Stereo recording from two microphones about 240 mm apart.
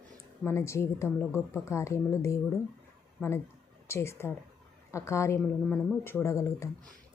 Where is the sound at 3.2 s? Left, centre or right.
Centre.